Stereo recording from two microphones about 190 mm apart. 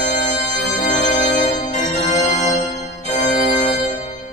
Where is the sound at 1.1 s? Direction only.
40° left (ahead or behind).